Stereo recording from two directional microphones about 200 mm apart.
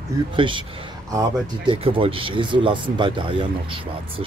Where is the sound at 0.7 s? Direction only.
25° right (ahead or behind).